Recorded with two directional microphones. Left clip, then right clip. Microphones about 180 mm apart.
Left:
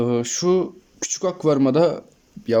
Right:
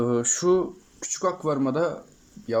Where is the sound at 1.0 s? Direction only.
15° left (ahead or behind).